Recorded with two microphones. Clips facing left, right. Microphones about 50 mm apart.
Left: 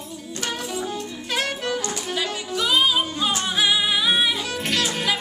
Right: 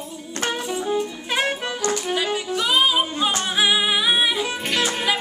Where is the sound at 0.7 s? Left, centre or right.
Centre.